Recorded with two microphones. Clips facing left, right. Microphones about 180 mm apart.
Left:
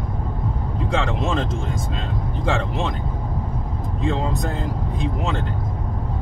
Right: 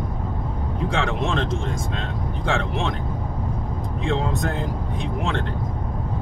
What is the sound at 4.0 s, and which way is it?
Speech, centre (ahead or behind).